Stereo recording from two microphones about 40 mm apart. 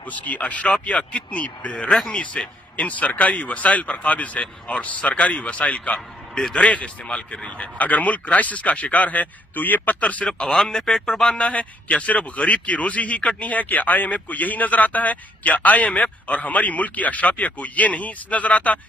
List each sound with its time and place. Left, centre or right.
0.0 s a man's voice: left
2.4 s a man's voice: left
2.7 s a man's voice: left
10.4 s a man's voice: centre
11.3 s a man's voice: left